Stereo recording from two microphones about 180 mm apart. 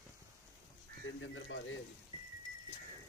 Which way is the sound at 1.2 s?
90° left.